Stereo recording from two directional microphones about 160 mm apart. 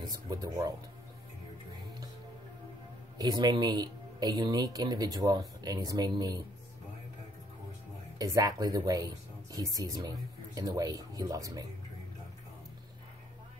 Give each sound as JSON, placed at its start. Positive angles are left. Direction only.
{"t": 0.3, "sound": "speech", "side_deg": -20}
{"t": 3.2, "sound": "speech", "side_deg": -25}
{"t": 8.2, "sound": "speech", "side_deg": -25}